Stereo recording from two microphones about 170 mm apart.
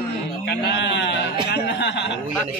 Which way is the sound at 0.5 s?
75° left (ahead or behind).